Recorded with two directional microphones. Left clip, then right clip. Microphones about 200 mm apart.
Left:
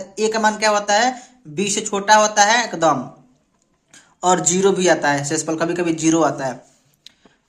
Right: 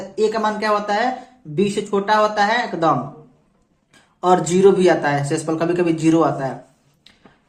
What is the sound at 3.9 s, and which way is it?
Speech, 25° left (ahead or behind).